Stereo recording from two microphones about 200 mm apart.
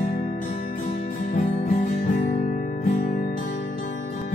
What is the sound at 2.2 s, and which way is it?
Guitar, 40° left (ahead or behind).